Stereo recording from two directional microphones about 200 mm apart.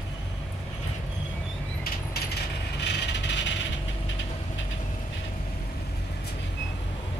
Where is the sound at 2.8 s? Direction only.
60° left (ahead or behind).